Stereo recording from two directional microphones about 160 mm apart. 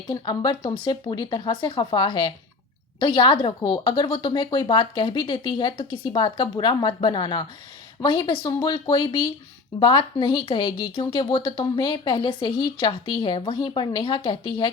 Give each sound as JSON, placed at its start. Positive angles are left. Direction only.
{"t": 0.1, "sound": "a woman's voice", "side_deg": 25}